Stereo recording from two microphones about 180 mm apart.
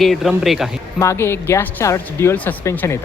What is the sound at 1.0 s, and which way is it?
Speech, 15° left (ahead or behind).